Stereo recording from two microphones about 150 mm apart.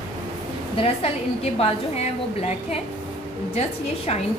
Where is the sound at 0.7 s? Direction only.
40° left (ahead or behind).